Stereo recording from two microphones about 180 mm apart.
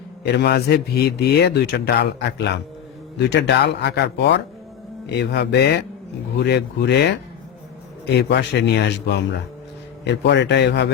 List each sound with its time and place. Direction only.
0.3 s a man's voice: 65° left (ahead or behind)